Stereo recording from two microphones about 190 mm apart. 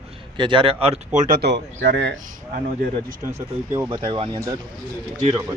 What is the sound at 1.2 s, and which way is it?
Speech, 50° right (ahead or behind).